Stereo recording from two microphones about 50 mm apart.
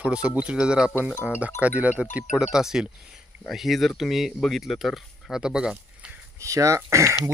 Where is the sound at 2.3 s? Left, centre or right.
Centre.